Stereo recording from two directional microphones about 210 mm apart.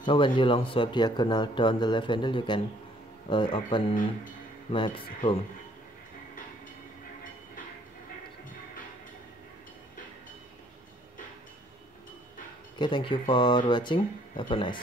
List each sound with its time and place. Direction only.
0.0 s speech: 25° left (ahead or behind)
12.7 s speech: 20° left (ahead or behind)